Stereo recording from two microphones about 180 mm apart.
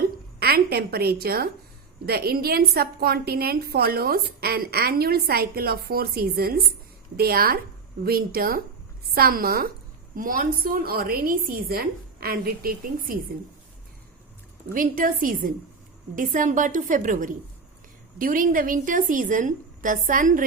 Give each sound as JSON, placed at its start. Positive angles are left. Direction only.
{"t": 0.3, "sound": "a woman's voice", "side_deg": -60}
{"t": 14.7, "sound": "a woman's voice", "side_deg": -50}